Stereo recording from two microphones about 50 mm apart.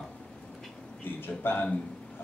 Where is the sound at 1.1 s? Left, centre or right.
Left.